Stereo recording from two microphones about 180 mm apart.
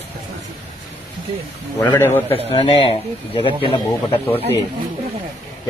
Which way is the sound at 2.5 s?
30° left (ahead or behind).